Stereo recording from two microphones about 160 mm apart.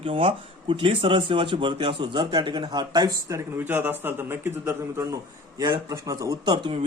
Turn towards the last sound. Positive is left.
turn(degrees=-30)  # may be behind; listen again after turning